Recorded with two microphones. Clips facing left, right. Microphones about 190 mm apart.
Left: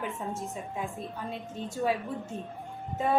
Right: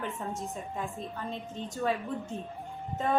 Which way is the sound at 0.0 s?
5° left (ahead or behind).